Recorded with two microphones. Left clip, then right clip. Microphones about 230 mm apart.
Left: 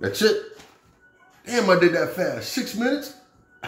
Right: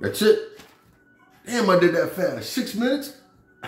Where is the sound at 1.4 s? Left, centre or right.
Centre.